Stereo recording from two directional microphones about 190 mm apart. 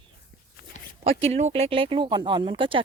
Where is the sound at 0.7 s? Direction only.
40° left (ahead or behind).